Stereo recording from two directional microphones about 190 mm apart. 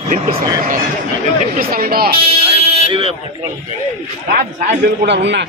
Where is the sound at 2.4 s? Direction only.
30° right (ahead or behind).